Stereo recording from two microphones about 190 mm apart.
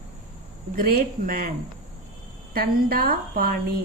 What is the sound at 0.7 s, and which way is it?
Speech, 50° right (ahead or behind).